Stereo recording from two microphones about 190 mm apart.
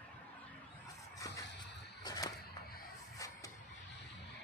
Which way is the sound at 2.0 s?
20° left (ahead or behind).